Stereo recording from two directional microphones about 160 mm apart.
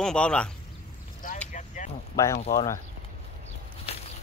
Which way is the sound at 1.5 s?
50° left (ahead or behind).